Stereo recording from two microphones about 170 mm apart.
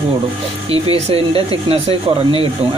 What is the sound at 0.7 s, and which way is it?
Speech, 35° right (ahead or behind).